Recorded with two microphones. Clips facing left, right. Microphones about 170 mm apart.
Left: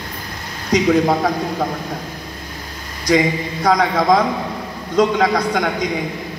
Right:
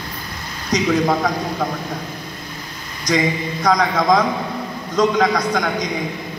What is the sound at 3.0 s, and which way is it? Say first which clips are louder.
A man's voice: left 3 dB; 30° left (ahead or behind).